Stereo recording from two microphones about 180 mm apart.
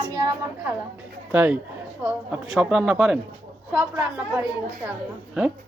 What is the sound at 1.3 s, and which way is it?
A man's voice, 10° right (ahead or behind).